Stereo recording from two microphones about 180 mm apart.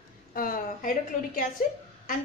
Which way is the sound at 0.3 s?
50° left (ahead or behind).